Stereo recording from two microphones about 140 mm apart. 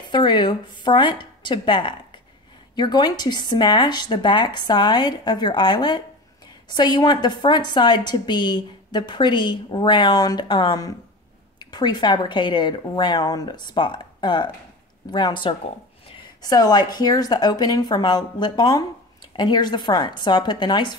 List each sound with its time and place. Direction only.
0.1 s a woman's voice: 35° left (ahead or behind)
16.4 s a woman's voice: 30° left (ahead or behind)